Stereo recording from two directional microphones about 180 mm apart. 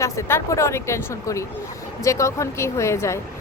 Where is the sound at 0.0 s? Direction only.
15° left (ahead or behind).